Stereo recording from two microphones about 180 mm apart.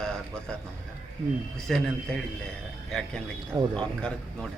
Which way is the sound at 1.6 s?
Centre (ahead or behind).